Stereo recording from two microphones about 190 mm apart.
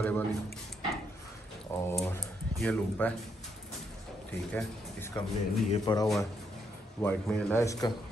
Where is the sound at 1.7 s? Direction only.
10° left (ahead or behind).